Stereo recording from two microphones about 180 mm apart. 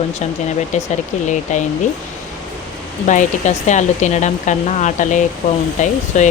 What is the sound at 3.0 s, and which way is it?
Speech, 40° left (ahead or behind).